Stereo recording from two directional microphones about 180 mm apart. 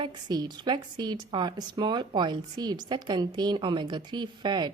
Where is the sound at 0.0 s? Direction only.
25° right (ahead or behind).